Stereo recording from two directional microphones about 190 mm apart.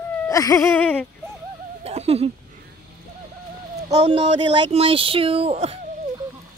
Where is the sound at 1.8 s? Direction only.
35° right (ahead or behind).